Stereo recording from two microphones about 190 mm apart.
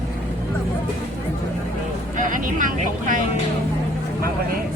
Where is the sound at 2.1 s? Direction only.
45° right (ahead or behind).